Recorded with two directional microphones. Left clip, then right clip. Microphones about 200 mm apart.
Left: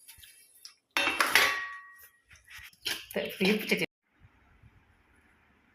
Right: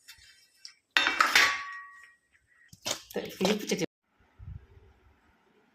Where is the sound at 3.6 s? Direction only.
45° right (ahead or behind).